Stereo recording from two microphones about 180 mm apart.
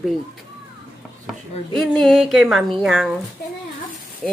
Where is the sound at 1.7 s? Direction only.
Centre (ahead or behind).